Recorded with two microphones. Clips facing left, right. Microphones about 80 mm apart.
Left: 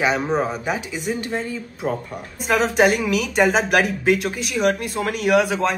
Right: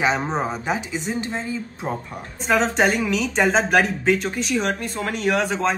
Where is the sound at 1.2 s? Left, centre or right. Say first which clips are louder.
Left 2 dB; centre.